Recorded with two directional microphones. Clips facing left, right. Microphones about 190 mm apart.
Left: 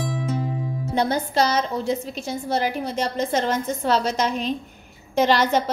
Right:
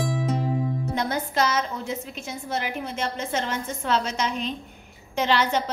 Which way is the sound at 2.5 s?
35° left (ahead or behind).